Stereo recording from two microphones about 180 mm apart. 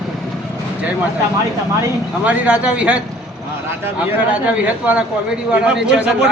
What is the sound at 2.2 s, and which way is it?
Speech, 5° right (ahead or behind).